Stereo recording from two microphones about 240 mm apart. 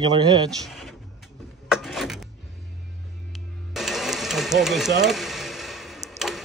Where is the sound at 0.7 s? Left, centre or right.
Centre.